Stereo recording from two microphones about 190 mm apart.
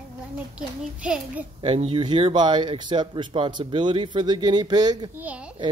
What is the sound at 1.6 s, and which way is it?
Speech, 30° right (ahead or behind).